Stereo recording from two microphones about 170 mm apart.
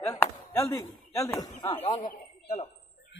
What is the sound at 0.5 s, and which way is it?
A man's voice, 15° left (ahead or behind).